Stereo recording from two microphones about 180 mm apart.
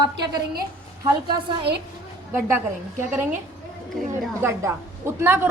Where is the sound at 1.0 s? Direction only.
25° right (ahead or behind).